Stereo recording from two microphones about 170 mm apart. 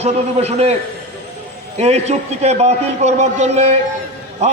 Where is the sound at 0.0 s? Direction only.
40° right (ahead or behind).